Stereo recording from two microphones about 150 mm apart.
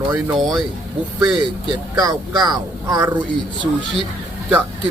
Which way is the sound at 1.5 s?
30° right (ahead or behind).